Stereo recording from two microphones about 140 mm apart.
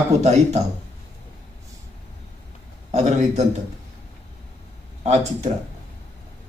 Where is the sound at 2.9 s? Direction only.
55° right (ahead or behind).